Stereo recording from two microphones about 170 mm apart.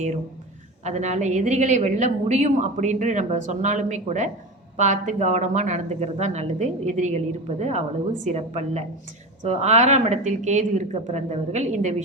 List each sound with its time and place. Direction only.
0.9 s a woman's voice: 45° right (ahead or behind)